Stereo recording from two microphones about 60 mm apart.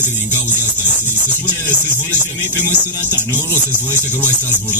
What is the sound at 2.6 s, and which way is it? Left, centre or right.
Music, left.